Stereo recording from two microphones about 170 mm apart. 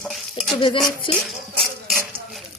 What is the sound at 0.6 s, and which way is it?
Speech, 30° left (ahead or behind).